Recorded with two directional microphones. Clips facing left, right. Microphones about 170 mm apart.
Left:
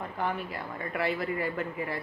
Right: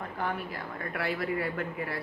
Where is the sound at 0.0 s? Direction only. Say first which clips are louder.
Left 1 dB; centre (ahead or behind).